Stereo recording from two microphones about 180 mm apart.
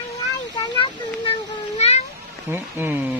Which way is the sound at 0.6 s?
25° left (ahead or behind).